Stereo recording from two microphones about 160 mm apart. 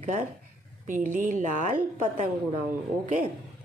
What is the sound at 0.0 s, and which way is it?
Speech, 45° right (ahead or behind).